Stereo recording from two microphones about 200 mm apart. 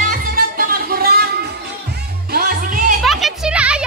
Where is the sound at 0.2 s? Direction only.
45° right (ahead or behind).